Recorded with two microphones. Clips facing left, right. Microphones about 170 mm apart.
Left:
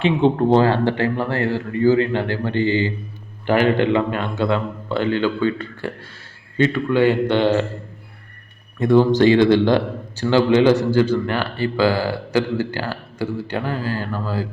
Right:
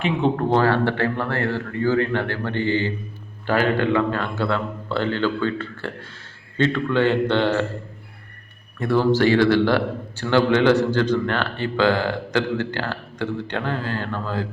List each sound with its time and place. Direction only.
0.0 s a man's voice: 30° left (ahead or behind)
8.8 s a man's voice: 20° left (ahead or behind)